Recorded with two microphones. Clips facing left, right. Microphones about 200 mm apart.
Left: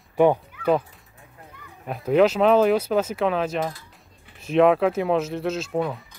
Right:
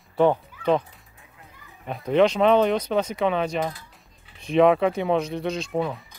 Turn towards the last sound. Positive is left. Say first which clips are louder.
# left 1 dB
turn(degrees=0)  # may be behind; listen again after turning